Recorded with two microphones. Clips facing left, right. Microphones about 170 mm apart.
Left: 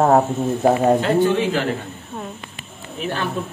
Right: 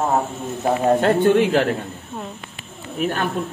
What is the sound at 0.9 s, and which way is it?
Speech, 55° right (ahead or behind).